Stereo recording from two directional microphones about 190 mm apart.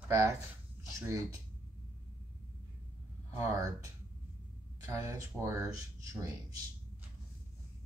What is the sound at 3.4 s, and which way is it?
Speech, 15° right (ahead or behind).